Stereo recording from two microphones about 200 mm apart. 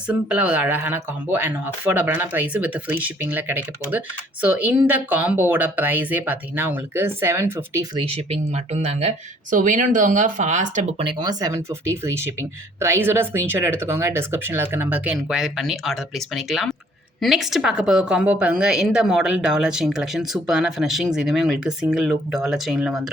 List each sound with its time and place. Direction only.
0.1 s speech: 5° right (ahead or behind)
8.0 s speech: 30° right (ahead or behind)
11.0 s a woman's voice: 20° right (ahead or behind); by 23.0 s 5° right (ahead or behind)